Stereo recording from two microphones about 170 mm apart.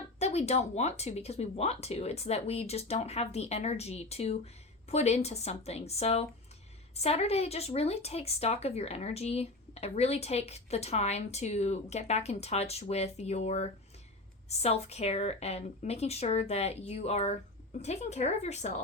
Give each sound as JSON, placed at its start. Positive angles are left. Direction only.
{"t": 0.2, "sound": "speech", "side_deg": 40}